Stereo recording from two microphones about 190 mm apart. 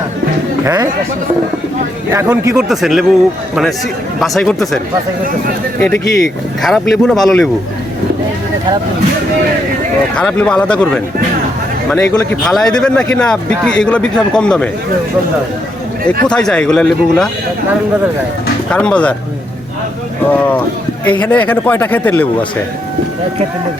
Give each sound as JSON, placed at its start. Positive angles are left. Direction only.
{"t": 0.6, "sound": "speech", "side_deg": -15}
{"t": 2.1, "sound": "a man's voice", "side_deg": -15}
{"t": 2.6, "sound": "speech", "side_deg": 0}
{"t": 5.8, "sound": "speech", "side_deg": 5}
{"t": 10.2, "sound": "speech", "side_deg": 5}
{"t": 16.2, "sound": "speech", "side_deg": 5}
{"t": 18.7, "sound": "speech", "side_deg": 5}
{"t": 20.3, "sound": "a man's voice", "side_deg": 10}